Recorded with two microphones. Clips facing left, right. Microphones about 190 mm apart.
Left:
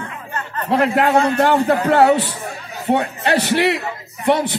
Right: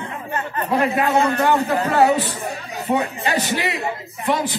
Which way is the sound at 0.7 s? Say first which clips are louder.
Left 4 dB; 70° left (ahead or behind).